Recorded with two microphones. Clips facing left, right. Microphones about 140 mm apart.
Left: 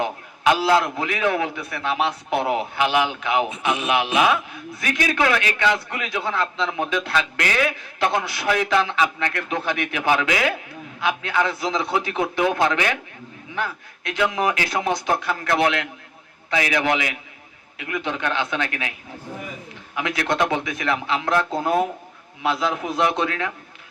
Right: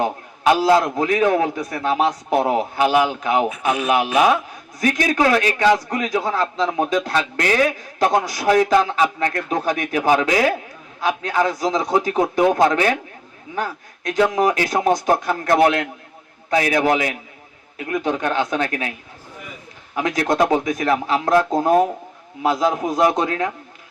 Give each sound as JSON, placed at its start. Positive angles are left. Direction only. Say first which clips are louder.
{"t": 0.0, "sound": "a man's voice", "louder": "right 2 dB", "side_deg": -40}
{"t": 20.0, "sound": "a man's voice", "louder": "right 4 dB", "side_deg": -40}